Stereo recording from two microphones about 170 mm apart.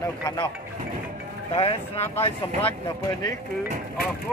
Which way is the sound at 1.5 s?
35° left (ahead or behind).